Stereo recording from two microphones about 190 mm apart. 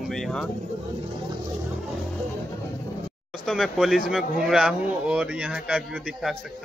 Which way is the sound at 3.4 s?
Centre (ahead or behind).